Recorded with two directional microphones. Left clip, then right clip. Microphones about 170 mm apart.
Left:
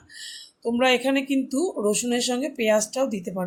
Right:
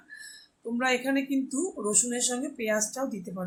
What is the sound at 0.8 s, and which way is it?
Speech, 45° left (ahead or behind).